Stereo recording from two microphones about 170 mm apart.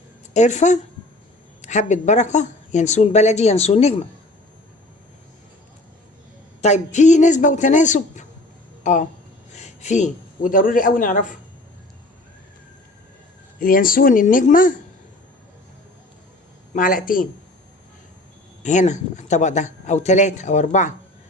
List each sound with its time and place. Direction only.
0.3 s a woman's voice: 45° left (ahead or behind)
6.6 s a man's voice: 40° left (ahead or behind)
13.6 s speech: 55° left (ahead or behind)
16.7 s speech: 55° left (ahead or behind)
18.6 s speech: 45° left (ahead or behind)